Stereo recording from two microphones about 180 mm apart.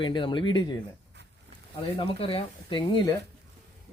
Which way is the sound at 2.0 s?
30° left (ahead or behind).